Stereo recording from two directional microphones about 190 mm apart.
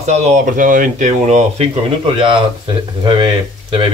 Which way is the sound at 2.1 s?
25° right (ahead or behind).